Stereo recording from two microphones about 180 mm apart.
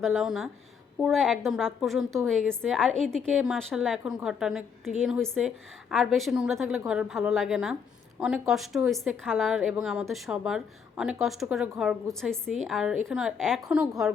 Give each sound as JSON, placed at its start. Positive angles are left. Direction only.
{"t": 0.0, "sound": "a woman's voice", "side_deg": 0}